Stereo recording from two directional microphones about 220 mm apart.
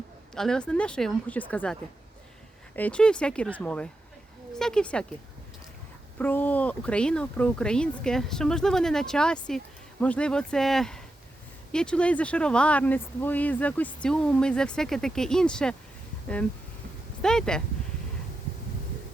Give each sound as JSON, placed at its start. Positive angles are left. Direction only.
{"t": 0.3, "sound": "speech", "side_deg": 5}
{"t": 6.1, "sound": "speech", "side_deg": 10}
{"t": 17.2, "sound": "speech", "side_deg": 5}